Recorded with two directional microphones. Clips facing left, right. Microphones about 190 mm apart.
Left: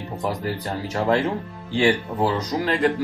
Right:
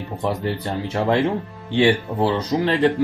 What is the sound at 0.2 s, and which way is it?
Speech, 25° right (ahead or behind).